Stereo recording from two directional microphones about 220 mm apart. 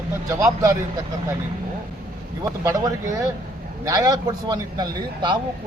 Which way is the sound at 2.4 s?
15° right (ahead or behind).